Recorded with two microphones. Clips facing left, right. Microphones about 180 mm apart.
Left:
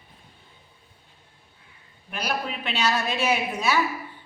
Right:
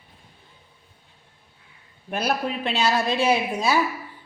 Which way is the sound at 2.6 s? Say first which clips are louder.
Right 3 dB; 30° right (ahead or behind).